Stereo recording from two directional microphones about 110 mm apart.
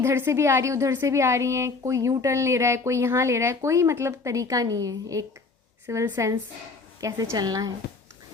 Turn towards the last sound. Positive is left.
turn(degrees=-35)  # may be behind; listen again after turning